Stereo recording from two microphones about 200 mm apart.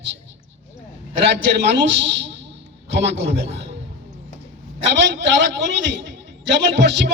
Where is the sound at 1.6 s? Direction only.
60° right (ahead or behind).